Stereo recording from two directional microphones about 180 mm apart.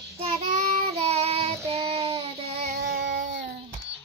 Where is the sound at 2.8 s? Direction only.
60° right (ahead or behind).